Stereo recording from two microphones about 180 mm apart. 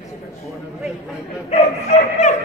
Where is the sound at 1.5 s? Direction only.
40° left (ahead or behind).